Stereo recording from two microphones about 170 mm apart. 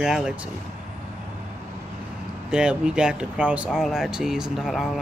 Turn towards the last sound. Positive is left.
turn(degrees=0)  # may be behind; listen again after turning